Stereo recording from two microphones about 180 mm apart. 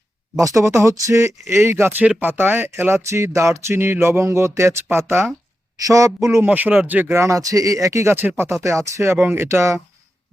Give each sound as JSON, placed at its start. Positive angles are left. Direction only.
{"t": 0.3, "sound": "speech", "side_deg": -15}